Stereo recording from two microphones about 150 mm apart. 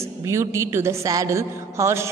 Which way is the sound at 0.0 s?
20° right (ahead or behind).